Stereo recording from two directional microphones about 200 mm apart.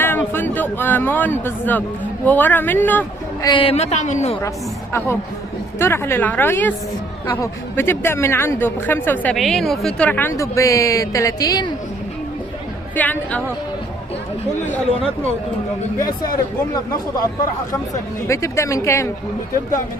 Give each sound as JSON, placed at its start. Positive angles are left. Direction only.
{"t": 0.0, "sound": "speech", "side_deg": 10}
{"t": 3.5, "sound": "a woman's voice", "side_deg": 30}
{"t": 4.4, "sound": "speech", "side_deg": 15}
{"t": 13.0, "sound": "speech", "side_deg": 10}
{"t": 18.3, "sound": "speech", "side_deg": 15}